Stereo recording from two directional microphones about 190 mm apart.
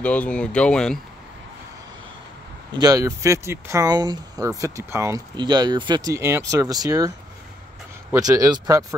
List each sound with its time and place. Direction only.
0.0 s speech: 5° left (ahead or behind)
2.7 s speech: 20° right (ahead or behind)